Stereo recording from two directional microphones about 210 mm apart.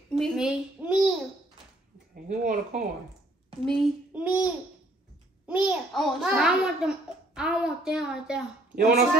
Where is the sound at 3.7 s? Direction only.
5° right (ahead or behind).